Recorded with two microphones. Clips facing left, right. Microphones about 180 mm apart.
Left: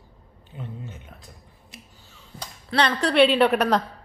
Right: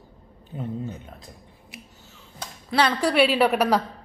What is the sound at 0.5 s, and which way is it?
Speech, 35° right (ahead or behind).